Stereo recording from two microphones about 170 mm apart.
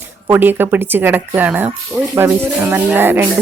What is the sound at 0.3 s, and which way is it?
Speech, 10° right (ahead or behind).